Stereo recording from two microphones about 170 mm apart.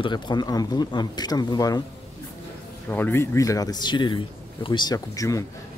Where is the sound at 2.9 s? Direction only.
15° left (ahead or behind).